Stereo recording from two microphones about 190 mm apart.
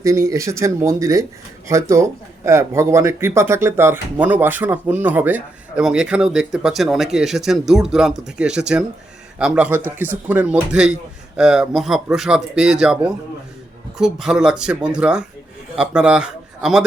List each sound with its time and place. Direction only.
0.0 s a man's voice: 15° right (ahead or behind)